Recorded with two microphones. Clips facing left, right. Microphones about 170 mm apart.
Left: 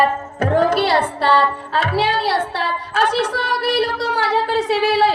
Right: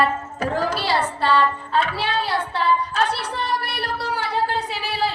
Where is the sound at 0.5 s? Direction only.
60° left (ahead or behind).